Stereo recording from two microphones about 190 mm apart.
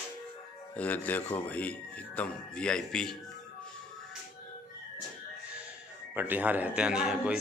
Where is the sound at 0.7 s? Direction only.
10° left (ahead or behind).